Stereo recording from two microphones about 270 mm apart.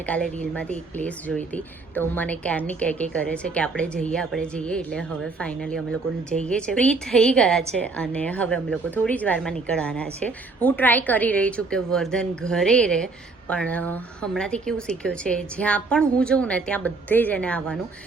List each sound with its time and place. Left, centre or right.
0.0 s a woman's voice: centre